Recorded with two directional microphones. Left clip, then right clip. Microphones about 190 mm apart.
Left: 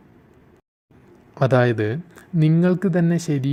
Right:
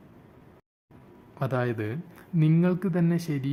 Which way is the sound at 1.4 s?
30° left (ahead or behind).